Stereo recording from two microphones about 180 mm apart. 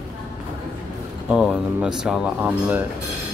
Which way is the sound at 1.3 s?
5° right (ahead or behind).